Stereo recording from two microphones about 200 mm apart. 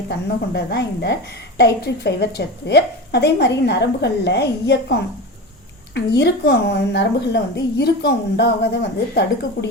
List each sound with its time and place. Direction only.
0.1 s a woman's voice: 55° left (ahead or behind)